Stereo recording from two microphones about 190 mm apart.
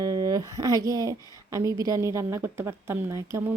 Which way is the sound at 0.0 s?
20° right (ahead or behind).